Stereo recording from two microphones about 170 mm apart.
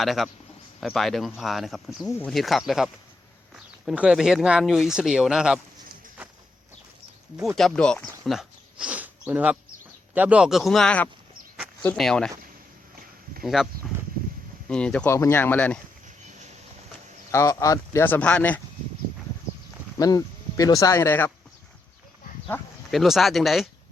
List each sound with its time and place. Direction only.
0.0 s speech: centre (ahead or behind)
7.4 s speech: centre (ahead or behind)
13.4 s speech: centre (ahead or behind)
17.3 s speech: 20° left (ahead or behind)
20.0 s speech: 20° left (ahead or behind)
22.9 s speech: centre (ahead or behind)